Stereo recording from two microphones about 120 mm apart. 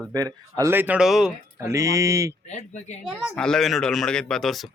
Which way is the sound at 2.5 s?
75° left (ahead or behind).